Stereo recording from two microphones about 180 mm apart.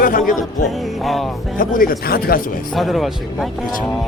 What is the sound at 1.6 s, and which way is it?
Speech, 50° left (ahead or behind).